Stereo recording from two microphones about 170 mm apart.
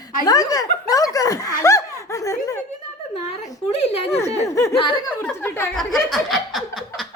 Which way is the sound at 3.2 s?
40° left (ahead or behind).